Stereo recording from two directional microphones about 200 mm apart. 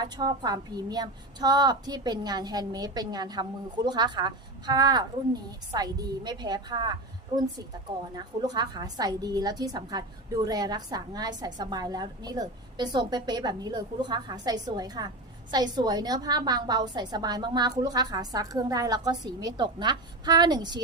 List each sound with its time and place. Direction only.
0.0 s a woman's voice: 20° right (ahead or behind)